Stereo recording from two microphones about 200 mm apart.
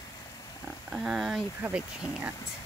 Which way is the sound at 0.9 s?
5° right (ahead or behind).